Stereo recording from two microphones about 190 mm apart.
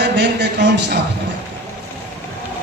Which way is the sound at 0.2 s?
60° right (ahead or behind).